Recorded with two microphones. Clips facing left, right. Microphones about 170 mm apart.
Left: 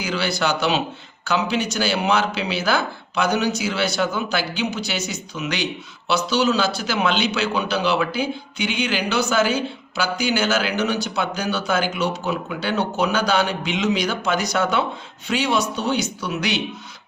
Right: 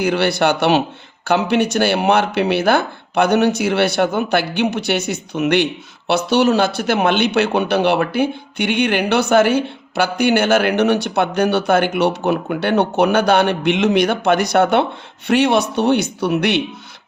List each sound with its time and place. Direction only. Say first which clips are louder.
0.0 s speech: right 7 dB; 60° right (ahead or behind)